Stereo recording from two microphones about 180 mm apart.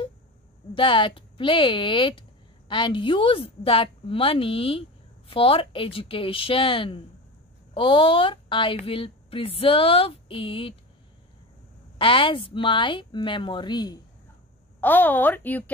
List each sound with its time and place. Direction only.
0.7 s a woman's voice: 30° left (ahead or behind)
12.0 s a woman's voice: 30° left (ahead or behind)
14.8 s a woman's voice: 10° left (ahead or behind)